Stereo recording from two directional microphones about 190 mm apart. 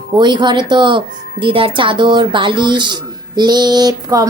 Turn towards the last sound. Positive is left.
turn(degrees=-20)  # may be behind; listen again after turning